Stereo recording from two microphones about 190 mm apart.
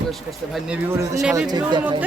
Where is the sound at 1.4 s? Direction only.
20° right (ahead or behind).